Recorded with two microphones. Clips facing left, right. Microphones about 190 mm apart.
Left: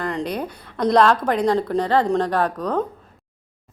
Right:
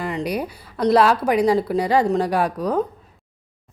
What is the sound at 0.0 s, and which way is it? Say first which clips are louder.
Speech: right 1 dB; 5° right (ahead or behind).